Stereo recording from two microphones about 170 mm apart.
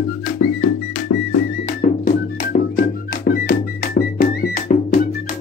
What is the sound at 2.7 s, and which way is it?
Music, 60° left (ahead or behind).